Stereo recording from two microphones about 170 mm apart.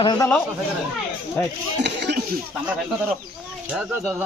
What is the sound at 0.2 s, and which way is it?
Speech, 10° left (ahead or behind).